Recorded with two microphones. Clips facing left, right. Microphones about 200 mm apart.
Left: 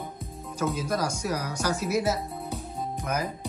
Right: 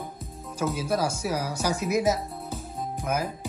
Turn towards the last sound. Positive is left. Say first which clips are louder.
# right 1 dB
turn(degrees=-5)  # may be behind; listen again after turning